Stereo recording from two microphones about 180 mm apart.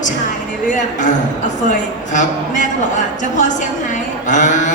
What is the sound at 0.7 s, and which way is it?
Speech, 45° left (ahead or behind).